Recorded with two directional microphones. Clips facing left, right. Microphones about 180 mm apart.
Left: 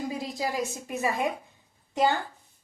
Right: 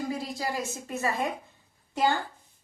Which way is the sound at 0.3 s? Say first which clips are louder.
Left 2 dB; 15° left (ahead or behind).